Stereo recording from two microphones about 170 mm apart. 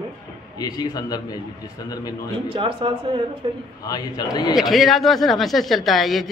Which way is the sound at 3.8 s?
20° left (ahead or behind).